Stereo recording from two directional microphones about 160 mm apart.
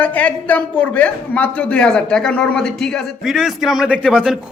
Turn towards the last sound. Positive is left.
turn(degrees=-5)  # may be behind; listen again after turning